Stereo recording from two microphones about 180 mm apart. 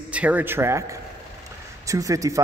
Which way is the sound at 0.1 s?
10° right (ahead or behind).